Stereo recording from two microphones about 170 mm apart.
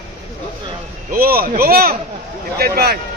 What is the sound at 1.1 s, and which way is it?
Speech, 60° right (ahead or behind).